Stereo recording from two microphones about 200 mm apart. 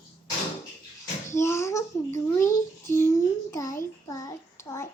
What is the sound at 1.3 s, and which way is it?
A child's voice, 15° left (ahead or behind).